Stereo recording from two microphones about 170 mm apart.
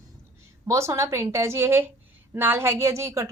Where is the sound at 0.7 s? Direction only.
15° right (ahead or behind).